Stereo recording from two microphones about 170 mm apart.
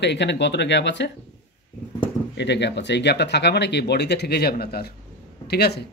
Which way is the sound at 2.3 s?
90° left.